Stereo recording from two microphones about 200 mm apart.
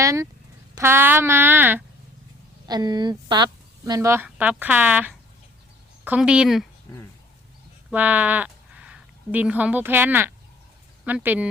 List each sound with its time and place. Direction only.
0.0 s speech: 15° right (ahead or behind)
2.6 s speech: 20° right (ahead or behind); by 6.7 s 5° right (ahead or behind)
7.9 s speech: 10° right (ahead or behind)